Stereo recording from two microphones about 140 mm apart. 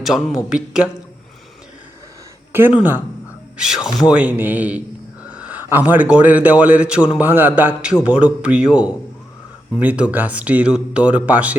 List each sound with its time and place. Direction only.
0.0 s speech: centre (ahead or behind)
2.5 s a man's voice: 15° right (ahead or behind)